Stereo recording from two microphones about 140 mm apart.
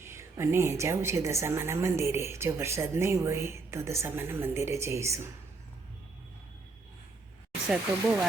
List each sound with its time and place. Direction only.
0.0 s a woman's voice: 20° right (ahead or behind)
7.7 s speech: 5° right (ahead or behind)